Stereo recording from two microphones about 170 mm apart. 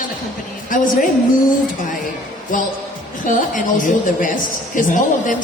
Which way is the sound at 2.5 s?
50° left (ahead or behind).